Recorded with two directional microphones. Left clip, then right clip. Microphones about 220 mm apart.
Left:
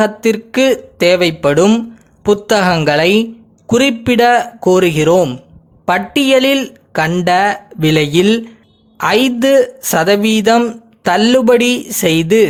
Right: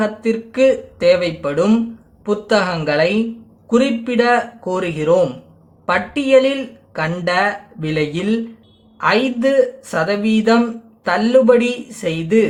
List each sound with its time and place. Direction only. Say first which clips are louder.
0.0 s speech: left 6 dB; 45° left (ahead or behind)